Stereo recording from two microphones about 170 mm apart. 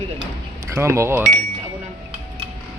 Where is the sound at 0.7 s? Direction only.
15° right (ahead or behind).